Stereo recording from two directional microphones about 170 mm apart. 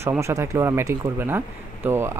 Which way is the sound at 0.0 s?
15° right (ahead or behind).